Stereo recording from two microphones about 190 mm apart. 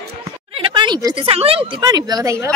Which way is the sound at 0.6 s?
25° right (ahead or behind).